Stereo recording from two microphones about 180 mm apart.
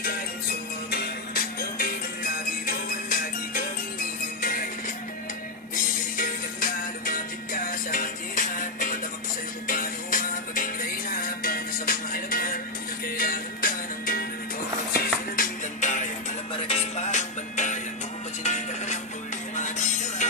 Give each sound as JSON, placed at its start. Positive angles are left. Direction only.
{"t": 0.8, "sound": "music", "side_deg": 60}
{"t": 6.1, "sound": "music", "side_deg": 50}